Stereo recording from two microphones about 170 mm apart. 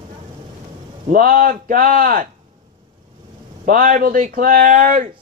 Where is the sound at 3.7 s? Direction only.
55° right (ahead or behind).